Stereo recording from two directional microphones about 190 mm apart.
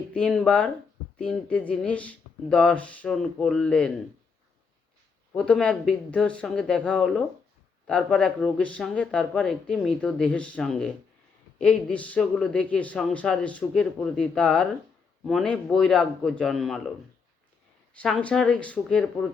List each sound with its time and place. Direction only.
0.1 s speech: 5° left (ahead or behind)
5.3 s a man's voice: 5° left (ahead or behind)
17.9 s speech: 5° left (ahead or behind)